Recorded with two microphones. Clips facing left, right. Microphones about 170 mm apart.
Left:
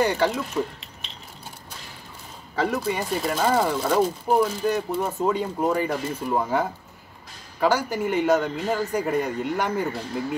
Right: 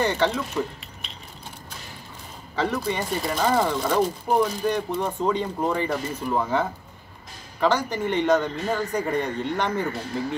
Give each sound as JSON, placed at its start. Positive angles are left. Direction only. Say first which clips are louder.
{"t": 0.0, "sound": "speech", "louder": "left 1 dB", "side_deg": 10}
{"t": 2.5, "sound": "speech", "louder": "left 1 dB", "side_deg": 10}